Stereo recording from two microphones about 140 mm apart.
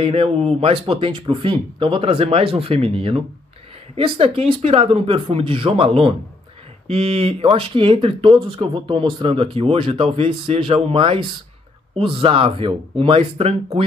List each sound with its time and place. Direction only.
0.0 s speech: 45° right (ahead or behind)